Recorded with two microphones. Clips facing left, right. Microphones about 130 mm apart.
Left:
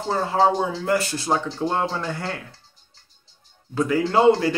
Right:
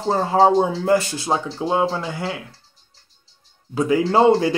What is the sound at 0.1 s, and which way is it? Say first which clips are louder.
Speech: right 4 dB; 25° right (ahead or behind).